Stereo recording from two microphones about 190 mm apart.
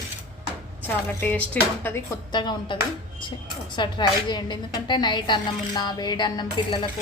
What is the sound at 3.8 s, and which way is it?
A woman's voice, 25° left (ahead or behind).